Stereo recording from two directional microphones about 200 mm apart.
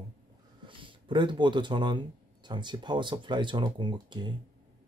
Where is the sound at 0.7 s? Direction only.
25° right (ahead or behind).